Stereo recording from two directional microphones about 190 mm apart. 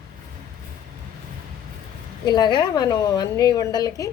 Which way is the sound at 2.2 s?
20° left (ahead or behind).